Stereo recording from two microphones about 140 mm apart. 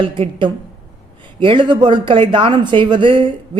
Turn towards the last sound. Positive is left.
turn(degrees=-35)  # may be behind; listen again after turning